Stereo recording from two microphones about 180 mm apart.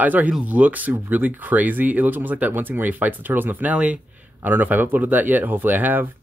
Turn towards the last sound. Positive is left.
turn(degrees=-10)  # may be behind; listen again after turning